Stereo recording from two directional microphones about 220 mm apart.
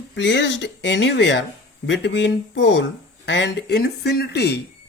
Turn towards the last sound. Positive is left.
turn(degrees=50)  # may be behind; listen again after turning